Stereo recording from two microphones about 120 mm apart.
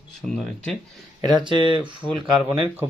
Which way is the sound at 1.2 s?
35° right (ahead or behind).